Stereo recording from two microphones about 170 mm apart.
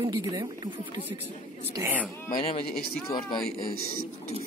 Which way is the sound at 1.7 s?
10° right (ahead or behind).